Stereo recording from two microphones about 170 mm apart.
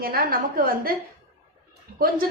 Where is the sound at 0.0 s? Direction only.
60° right (ahead or behind).